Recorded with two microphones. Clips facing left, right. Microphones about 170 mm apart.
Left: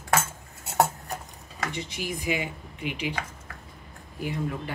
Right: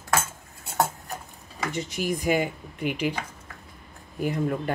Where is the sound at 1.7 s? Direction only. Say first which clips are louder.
Right 5 dB; 45° right (ahead or behind).